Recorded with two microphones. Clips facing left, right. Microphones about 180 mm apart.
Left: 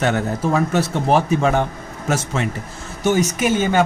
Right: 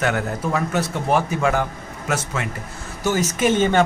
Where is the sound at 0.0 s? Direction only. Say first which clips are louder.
Left 3 dB; 25° left (ahead or behind).